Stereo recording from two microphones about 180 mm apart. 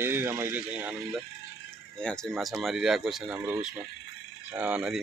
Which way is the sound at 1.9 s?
5° left (ahead or behind).